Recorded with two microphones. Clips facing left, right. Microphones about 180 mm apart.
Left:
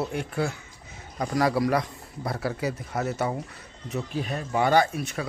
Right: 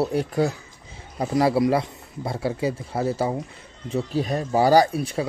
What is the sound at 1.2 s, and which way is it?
Speech, 25° right (ahead or behind).